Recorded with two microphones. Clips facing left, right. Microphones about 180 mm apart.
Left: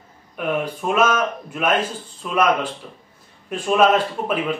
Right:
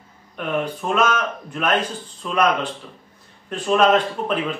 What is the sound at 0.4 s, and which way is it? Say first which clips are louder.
Speech: left 1 dB; 5° left (ahead or behind).